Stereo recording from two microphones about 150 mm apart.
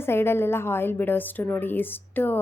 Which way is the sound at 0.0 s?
15° left (ahead or behind).